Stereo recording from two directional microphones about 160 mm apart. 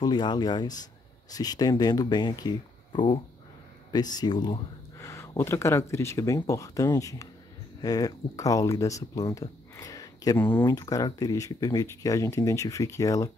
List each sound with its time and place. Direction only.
0.0 s speech: 25° left (ahead or behind)